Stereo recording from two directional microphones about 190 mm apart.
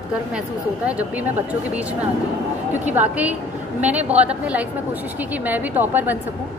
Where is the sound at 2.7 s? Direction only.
10° right (ahead or behind).